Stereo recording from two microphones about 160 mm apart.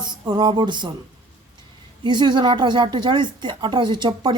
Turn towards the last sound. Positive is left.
turn(degrees=-30)  # may be behind; listen again after turning